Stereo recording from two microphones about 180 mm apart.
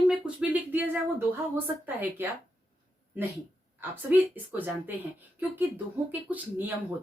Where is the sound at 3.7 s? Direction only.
10° right (ahead or behind).